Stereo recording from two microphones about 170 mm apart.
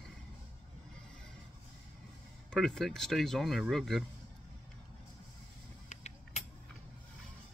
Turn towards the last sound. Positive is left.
turn(degrees=45)  # may be behind; listen again after turning